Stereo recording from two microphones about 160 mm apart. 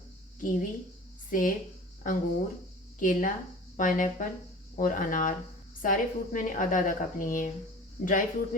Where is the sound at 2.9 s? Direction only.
55° left (ahead or behind).